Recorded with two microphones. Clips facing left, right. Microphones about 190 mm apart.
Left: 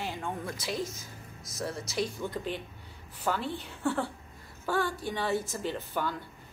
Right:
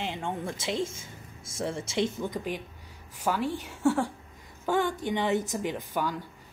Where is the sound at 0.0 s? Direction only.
25° right (ahead or behind).